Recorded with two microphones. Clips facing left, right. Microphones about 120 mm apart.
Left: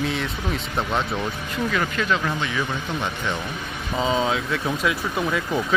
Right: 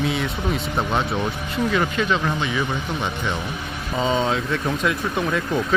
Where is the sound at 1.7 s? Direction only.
15° right (ahead or behind).